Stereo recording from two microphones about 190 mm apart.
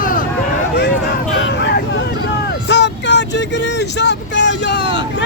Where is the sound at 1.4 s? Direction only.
65° left (ahead or behind).